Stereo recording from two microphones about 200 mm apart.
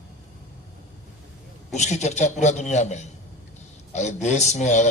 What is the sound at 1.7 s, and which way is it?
A man's voice, 35° left (ahead or behind).